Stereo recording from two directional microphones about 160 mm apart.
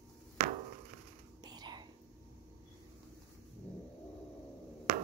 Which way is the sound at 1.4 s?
25° right (ahead or behind).